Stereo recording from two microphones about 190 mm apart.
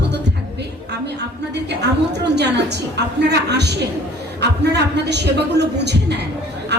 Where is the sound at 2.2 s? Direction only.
65° right (ahead or behind).